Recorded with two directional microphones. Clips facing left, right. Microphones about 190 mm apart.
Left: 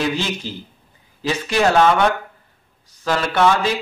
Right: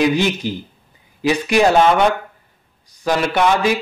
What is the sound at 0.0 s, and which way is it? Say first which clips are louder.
A man's voice: right 6 dB; 15° right (ahead or behind).